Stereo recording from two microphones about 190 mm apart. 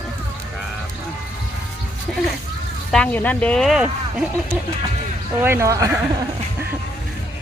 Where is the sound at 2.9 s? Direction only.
5° left (ahead or behind).